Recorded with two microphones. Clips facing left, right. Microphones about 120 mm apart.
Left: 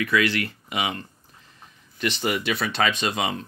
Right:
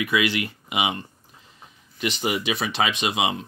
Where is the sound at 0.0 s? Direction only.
15° right (ahead or behind).